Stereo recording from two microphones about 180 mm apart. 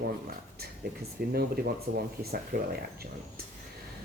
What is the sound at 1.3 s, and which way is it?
Speech, 60° right (ahead or behind).